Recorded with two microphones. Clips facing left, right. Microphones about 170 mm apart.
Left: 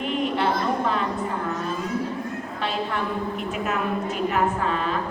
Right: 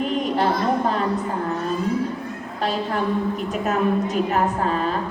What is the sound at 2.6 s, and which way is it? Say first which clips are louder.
A woman's voice: right 4 dB; 40° right (ahead or behind).